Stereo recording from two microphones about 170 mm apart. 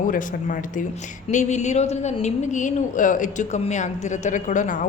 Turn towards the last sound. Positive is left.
turn(degrees=50)  # may be behind; listen again after turning